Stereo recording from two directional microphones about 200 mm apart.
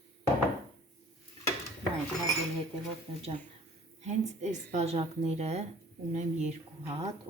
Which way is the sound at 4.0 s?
35° right (ahead or behind).